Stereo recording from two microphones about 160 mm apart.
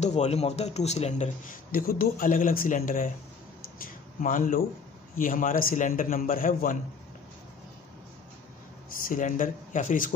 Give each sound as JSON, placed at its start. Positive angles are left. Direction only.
{"t": 0.0, "sound": "a man's voice", "side_deg": 45}
{"t": 9.0, "sound": "speech", "side_deg": 55}